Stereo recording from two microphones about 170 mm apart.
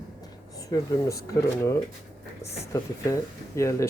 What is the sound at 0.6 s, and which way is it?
Speech, 20° left (ahead or behind).